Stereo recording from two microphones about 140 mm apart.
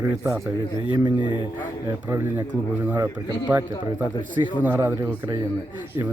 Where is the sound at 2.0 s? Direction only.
20° right (ahead or behind).